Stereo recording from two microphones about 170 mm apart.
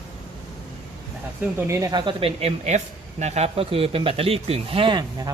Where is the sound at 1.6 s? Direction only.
15° right (ahead or behind).